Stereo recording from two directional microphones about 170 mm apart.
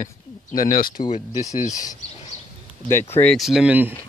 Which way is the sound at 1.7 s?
20° left (ahead or behind).